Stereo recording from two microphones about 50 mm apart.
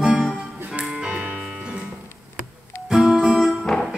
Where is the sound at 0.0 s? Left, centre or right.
Centre.